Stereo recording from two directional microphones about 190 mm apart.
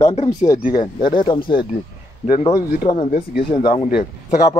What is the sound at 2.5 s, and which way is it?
Speech, 25° left (ahead or behind).